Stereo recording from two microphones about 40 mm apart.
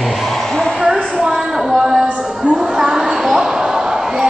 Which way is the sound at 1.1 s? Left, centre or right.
Centre.